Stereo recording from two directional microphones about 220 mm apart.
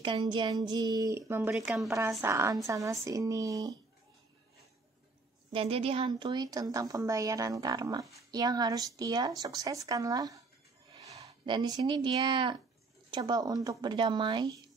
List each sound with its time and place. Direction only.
0.0 s a woman's voice: 20° right (ahead or behind); by 1.9 s centre (ahead or behind)
1.9 s a woman's voice: 15° right (ahead or behind)
5.5 s a woman's voice: 25° right (ahead or behind)